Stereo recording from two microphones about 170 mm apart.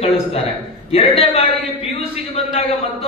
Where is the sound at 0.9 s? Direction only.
35° left (ahead or behind).